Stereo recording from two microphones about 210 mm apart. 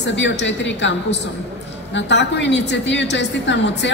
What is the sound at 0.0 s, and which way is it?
Speech, 60° left (ahead or behind).